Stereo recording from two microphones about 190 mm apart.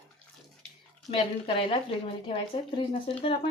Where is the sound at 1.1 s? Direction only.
30° left (ahead or behind).